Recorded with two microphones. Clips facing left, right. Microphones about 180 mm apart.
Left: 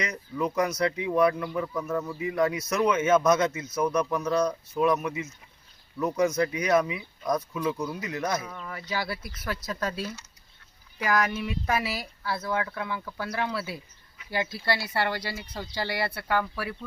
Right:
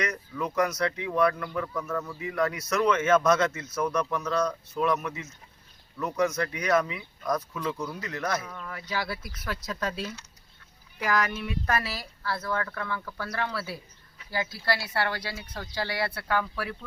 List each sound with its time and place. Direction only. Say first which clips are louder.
0.0 s speech: left 1 dB; 15° left (ahead or behind)
8.4 s speech: left 2 dB; 5° left (ahead or behind)